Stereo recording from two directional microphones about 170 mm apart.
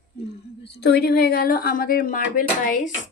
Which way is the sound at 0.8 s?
70° left (ahead or behind).